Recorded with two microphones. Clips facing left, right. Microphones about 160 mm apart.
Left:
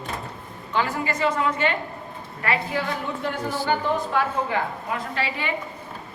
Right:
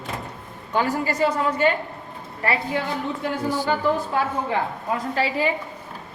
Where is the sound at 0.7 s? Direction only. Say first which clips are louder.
Right 2 dB; 40° right (ahead or behind).